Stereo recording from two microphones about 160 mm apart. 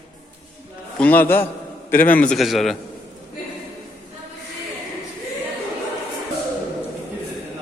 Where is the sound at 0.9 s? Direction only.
10° left (ahead or behind).